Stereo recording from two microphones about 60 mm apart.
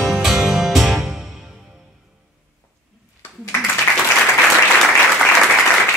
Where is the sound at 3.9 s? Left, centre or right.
Left.